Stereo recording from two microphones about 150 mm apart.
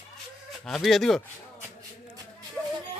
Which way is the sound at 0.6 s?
Centre (ahead or behind).